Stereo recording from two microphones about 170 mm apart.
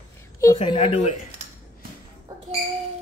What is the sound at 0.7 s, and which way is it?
Speech, 30° left (ahead or behind).